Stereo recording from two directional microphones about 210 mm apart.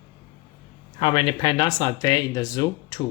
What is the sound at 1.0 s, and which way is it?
Speech, 25° left (ahead or behind).